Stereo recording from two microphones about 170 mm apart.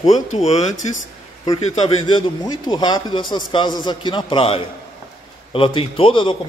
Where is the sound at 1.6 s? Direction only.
35° left (ahead or behind).